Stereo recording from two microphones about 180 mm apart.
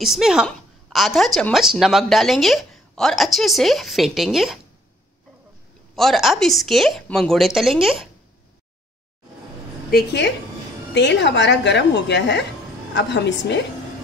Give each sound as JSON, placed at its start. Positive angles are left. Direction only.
{"t": 0.0, "sound": "a woman's voice", "side_deg": 0}
{"t": 5.9, "sound": "a woman's voice", "side_deg": 0}
{"t": 9.8, "sound": "a woman's voice", "side_deg": 65}
{"t": 11.0, "sound": "a woman's voice", "side_deg": 80}